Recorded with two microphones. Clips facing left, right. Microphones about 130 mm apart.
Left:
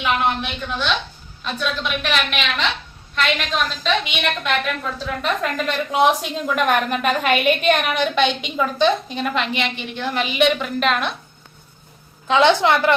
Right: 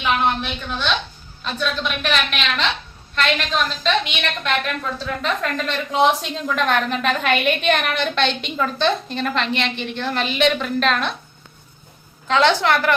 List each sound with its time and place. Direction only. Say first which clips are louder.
0.0 s a woman's voice: even; 5° left (ahead or behind)
12.3 s a woman's voice: left 2 dB; 15° left (ahead or behind)